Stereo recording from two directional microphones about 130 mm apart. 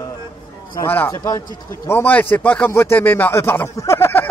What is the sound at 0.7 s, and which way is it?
A man's voice, 20° left (ahead or behind).